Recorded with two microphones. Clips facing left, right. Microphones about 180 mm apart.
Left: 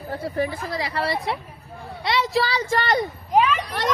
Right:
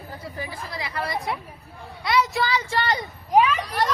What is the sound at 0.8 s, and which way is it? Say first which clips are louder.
A child's voice: left 3 dB; 30° left (ahead or behind).